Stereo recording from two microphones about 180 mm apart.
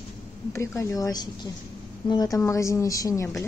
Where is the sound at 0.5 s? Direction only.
15° left (ahead or behind).